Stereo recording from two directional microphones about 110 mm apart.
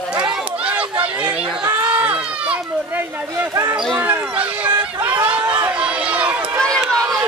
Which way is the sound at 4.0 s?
10° right (ahead or behind).